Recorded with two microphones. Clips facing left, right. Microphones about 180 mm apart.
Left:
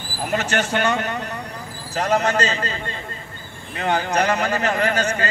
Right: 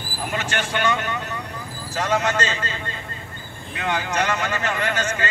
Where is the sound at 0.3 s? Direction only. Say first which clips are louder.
Left 5 dB; 40° left (ahead or behind).